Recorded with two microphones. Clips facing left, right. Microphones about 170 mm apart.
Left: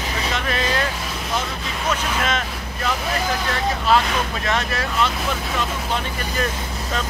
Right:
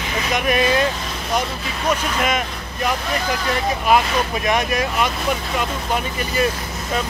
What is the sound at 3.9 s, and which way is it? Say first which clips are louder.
Speech: right 2 dB; 15° right (ahead or behind).